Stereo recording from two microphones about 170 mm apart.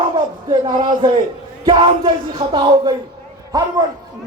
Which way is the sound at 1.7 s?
25° right (ahead or behind).